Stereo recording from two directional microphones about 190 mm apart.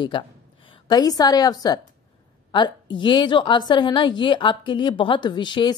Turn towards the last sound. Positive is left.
turn(degrees=25)  # may be behind; listen again after turning